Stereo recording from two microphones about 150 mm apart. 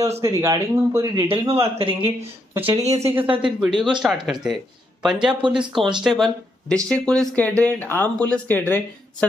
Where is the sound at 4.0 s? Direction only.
5° right (ahead or behind).